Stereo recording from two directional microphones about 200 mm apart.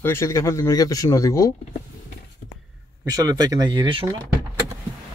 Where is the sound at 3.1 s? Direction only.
20° right (ahead or behind).